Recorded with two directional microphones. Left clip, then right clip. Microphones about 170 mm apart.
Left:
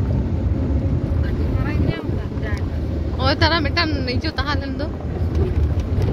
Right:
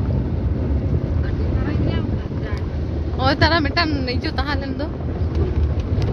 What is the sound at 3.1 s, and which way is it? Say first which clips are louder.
Speech: right 1 dB; 15° right (ahead or behind).